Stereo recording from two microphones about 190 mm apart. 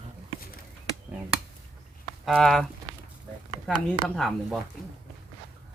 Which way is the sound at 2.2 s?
Centre (ahead or behind).